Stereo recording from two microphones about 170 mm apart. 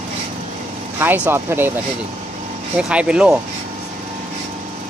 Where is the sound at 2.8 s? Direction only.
5° right (ahead or behind).